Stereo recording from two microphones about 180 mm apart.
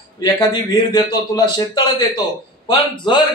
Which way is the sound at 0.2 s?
25° left (ahead or behind).